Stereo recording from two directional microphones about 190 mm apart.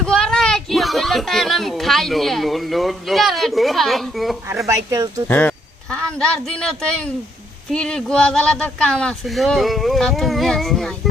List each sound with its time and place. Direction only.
0.0 s speech: 5° left (ahead or behind)
4.4 s speech: 15° right (ahead or behind)
5.3 s a man's voice: 10° left (ahead or behind)